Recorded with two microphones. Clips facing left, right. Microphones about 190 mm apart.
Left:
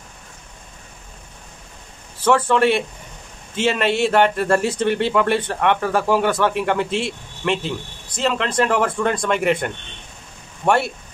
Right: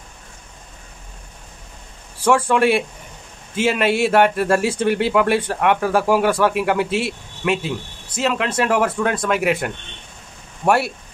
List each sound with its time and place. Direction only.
2.1 s speech: 10° right (ahead or behind)